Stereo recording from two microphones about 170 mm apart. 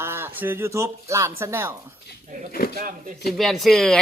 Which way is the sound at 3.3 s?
Centre (ahead or behind).